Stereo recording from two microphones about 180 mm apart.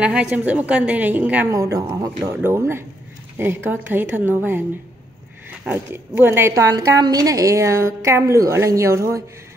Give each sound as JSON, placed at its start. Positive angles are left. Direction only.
{"t": 0.0, "sound": "a woman's voice", "side_deg": -5}
{"t": 3.3, "sound": "a woman's voice", "side_deg": -10}
{"t": 5.7, "sound": "a woman's voice", "side_deg": -10}